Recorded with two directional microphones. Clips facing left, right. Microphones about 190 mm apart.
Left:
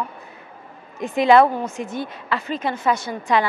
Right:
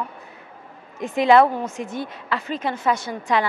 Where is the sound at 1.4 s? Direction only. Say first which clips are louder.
Left 1 dB; 25° left (ahead or behind).